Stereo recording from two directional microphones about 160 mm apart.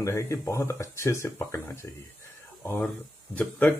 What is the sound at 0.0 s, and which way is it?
Speech, 20° left (ahead or behind).